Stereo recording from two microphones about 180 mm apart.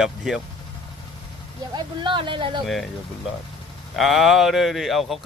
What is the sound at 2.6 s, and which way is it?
Speech, centre (ahead or behind).